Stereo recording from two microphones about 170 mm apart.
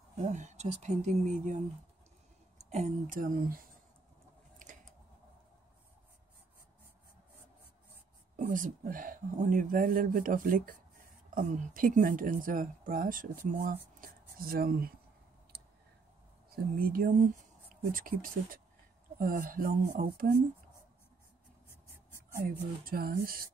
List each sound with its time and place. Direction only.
0.2 s speech: 45° right (ahead or behind)
2.7 s speech: 45° right (ahead or behind)
4.6 s scissors: 50° right (ahead or behind)
8.4 s speech: 50° right (ahead or behind)
16.4 s speech: 55° right (ahead or behind)
22.4 s speech: 60° right (ahead or behind)